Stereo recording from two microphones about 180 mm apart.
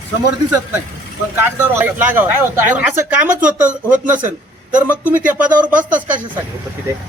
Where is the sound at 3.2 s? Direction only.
45° right (ahead or behind).